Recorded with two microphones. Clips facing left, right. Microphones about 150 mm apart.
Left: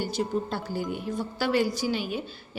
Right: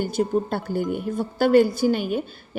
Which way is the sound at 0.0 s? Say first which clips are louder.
Right 6 dB; 50° right (ahead or behind).